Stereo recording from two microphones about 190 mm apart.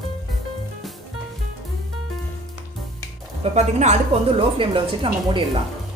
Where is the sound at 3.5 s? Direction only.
35° right (ahead or behind).